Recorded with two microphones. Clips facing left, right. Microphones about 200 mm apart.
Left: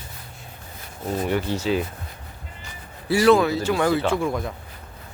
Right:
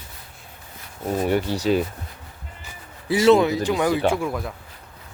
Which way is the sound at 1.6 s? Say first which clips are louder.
Right 3 dB; 45° right (ahead or behind).